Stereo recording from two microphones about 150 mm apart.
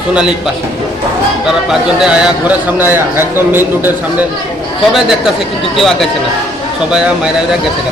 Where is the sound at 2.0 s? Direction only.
5° right (ahead or behind).